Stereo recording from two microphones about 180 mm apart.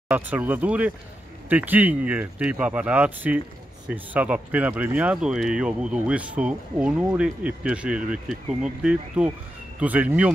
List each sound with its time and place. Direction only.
0.1 s speech: 10° right (ahead or behind)